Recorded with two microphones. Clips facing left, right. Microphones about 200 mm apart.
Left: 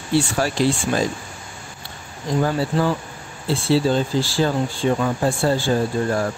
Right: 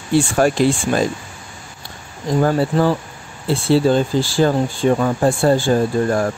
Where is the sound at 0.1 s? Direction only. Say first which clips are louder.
Right 5 dB; 50° right (ahead or behind).